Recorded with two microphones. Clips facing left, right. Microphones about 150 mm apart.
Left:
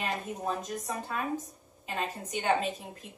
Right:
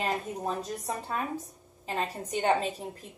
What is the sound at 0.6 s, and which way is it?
Speech, 30° right (ahead or behind).